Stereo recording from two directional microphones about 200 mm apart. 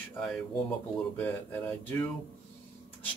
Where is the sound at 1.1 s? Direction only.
10° left (ahead or behind).